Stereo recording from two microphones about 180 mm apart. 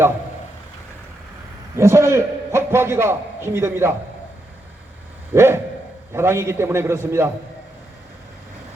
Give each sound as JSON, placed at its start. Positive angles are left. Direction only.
{"t": 1.7, "sound": "a man's voice", "side_deg": -15}
{"t": 5.3, "sound": "a man's voice", "side_deg": -15}